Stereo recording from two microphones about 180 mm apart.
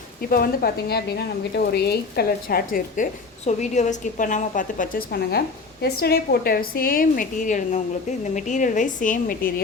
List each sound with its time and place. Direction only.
0.2 s a woman's voice: 55° left (ahead or behind)